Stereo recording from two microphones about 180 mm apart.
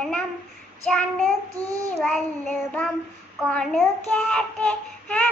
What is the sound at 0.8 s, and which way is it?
Child singing, 5° left (ahead or behind).